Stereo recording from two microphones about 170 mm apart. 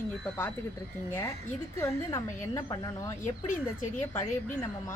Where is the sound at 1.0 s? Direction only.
15° left (ahead or behind).